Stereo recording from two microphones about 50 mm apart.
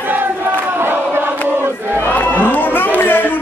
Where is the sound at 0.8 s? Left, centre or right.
Right.